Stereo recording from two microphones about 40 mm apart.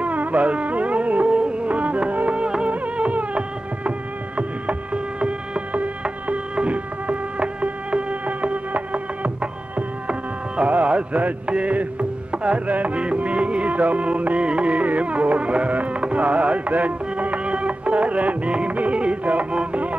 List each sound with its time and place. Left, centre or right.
0.0 s music: right
2.4 s music: right
2.7 s music: right
4.4 s a sound: right
6.2 s music: right